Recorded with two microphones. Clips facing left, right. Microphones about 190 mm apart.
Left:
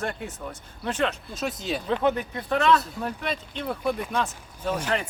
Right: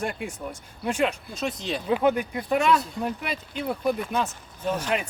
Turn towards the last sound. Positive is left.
turn(degrees=-10)  # may be behind; listen again after turning